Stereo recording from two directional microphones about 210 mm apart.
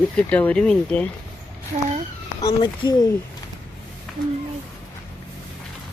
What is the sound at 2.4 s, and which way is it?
Speech, 20° left (ahead or behind).